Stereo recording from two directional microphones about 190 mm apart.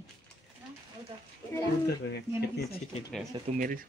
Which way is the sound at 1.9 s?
60° left (ahead or behind).